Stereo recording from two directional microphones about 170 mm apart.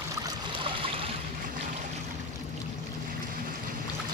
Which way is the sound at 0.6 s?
30° right (ahead or behind).